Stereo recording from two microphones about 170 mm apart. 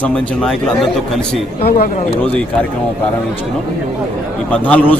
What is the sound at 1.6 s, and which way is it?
Speech, 65° left (ahead or behind).